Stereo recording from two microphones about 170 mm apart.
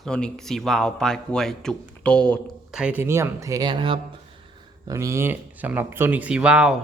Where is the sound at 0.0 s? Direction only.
5° left (ahead or behind).